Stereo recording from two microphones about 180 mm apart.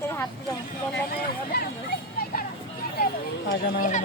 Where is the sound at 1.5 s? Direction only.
65° left (ahead or behind).